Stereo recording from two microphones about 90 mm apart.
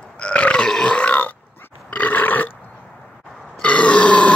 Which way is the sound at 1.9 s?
20° left (ahead or behind).